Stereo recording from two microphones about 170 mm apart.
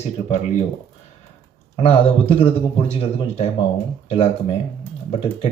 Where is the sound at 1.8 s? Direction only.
35° left (ahead or behind).